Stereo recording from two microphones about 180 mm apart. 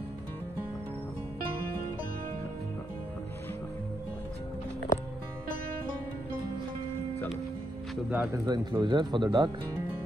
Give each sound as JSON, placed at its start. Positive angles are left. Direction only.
{"t": 7.9, "sound": "speech", "side_deg": -5}
{"t": 8.3, "sound": "speech", "side_deg": -25}